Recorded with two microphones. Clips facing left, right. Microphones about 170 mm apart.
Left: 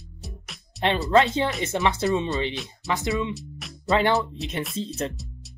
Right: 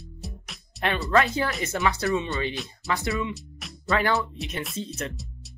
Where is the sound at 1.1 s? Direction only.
25° left (ahead or behind).